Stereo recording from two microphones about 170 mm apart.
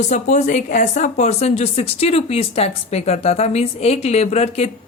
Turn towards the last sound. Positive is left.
turn(degrees=40)  # may be behind; listen again after turning